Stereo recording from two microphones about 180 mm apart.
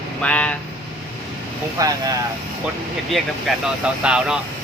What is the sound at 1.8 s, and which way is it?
Speech, 20° right (ahead or behind).